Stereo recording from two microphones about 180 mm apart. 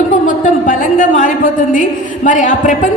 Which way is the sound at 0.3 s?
45° left (ahead or behind).